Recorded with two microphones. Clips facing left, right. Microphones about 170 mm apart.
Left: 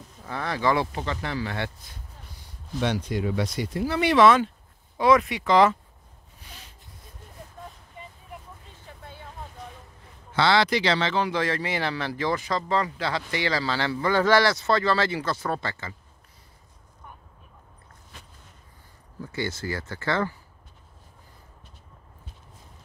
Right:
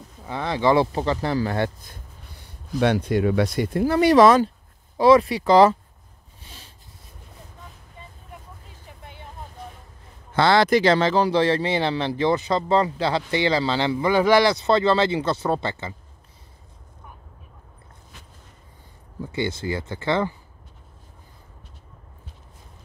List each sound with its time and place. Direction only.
0.3 s speech: 20° right (ahead or behind); by 2.0 s 40° right (ahead or behind)
2.8 s speech: 60° right (ahead or behind); by 5.8 s 35° right (ahead or behind)
6.4 s a sound: 30° right (ahead or behind)
8.8 s vehicle: 15° right (ahead or behind)
10.3 s speech: 50° right (ahead or behind); by 15.9 s 25° right (ahead or behind)
19.2 s speech: 20° right (ahead or behind)